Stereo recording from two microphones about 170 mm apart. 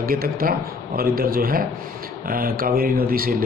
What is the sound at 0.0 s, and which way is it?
Speech, 60° right (ahead or behind).